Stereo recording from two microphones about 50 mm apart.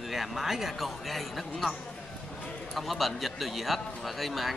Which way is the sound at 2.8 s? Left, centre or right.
Centre.